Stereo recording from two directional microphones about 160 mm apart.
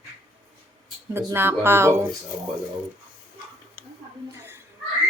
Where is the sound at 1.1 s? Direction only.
15° right (ahead or behind).